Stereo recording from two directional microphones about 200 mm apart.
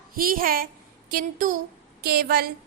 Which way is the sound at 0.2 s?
45° right (ahead or behind).